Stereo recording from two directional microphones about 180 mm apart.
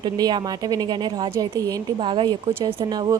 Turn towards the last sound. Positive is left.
turn(degrees=-25)  # may be behind; listen again after turning